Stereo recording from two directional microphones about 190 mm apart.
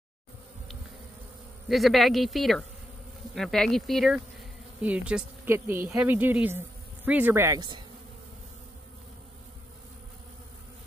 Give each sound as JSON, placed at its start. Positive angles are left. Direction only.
{"t": 1.7, "sound": "a woman's voice", "side_deg": 0}